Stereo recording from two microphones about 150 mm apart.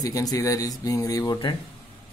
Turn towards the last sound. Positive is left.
turn(degrees=25)  # may be behind; listen again after turning